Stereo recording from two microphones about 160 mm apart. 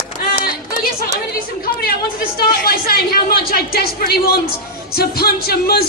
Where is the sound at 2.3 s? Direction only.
70° left (ahead or behind).